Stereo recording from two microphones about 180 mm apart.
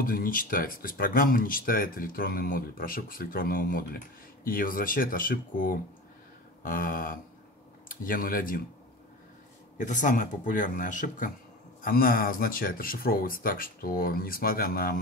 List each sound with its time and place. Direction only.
0.0 s speech: 50° left (ahead or behind)
9.8 s speech: 45° left (ahead or behind)